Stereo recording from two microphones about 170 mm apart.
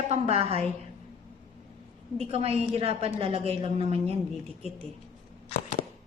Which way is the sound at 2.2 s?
35° right (ahead or behind).